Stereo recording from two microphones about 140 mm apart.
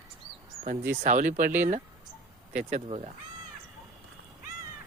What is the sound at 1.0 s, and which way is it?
Speech, 70° right (ahead or behind).